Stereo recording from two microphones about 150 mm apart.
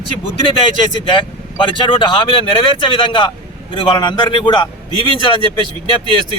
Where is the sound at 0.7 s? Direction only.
30° left (ahead or behind).